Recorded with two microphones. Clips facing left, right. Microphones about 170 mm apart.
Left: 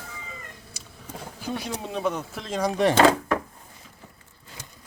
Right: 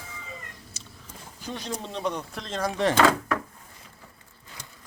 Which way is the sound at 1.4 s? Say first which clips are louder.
Left 2 dB; 10° left (ahead or behind).